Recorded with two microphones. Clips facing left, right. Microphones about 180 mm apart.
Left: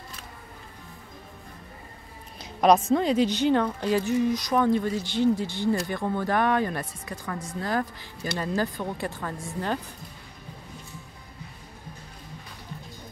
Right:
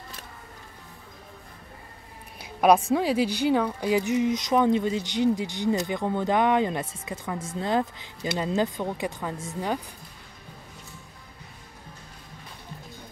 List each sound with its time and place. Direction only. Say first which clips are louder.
2.4 s a woman's voice: even; 10° right (ahead or behind)